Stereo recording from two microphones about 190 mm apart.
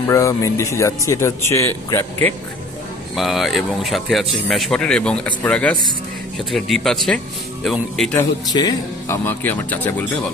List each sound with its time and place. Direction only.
0.1 s speech: 15° left (ahead or behind)
3.2 s speech: centre (ahead or behind)
8.1 s speech: 20° left (ahead or behind)